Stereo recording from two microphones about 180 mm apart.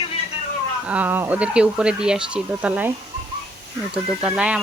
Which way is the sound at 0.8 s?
10° right (ahead or behind).